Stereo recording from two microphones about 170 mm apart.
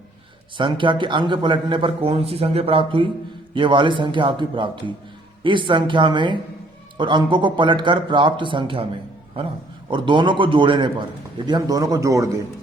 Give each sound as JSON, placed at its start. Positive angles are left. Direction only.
{"t": 0.5, "sound": "a man's voice", "side_deg": -30}
{"t": 9.9, "sound": "a man's voice", "side_deg": -30}